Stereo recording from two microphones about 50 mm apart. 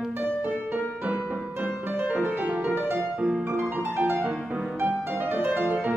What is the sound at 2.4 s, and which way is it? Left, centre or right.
Music, right.